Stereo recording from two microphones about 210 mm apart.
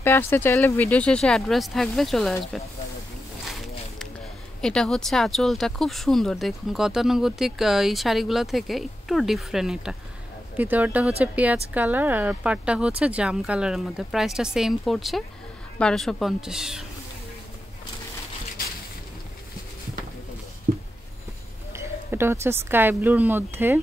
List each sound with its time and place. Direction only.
0.0 s speech: 10° left (ahead or behind)
4.6 s speech: 5° left (ahead or behind)
20.7 s a sound: 40° right (ahead or behind)
21.7 s speech: 10° right (ahead or behind)